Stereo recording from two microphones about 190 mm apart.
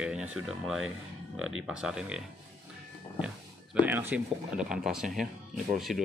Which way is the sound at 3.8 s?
10° right (ahead or behind).